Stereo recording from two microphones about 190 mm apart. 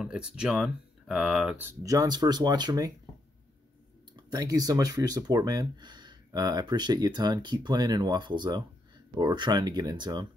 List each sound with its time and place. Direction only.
0.0 s speech: 5° right (ahead or behind); by 2.9 s 20° right (ahead or behind)
4.3 s speech: 20° right (ahead or behind)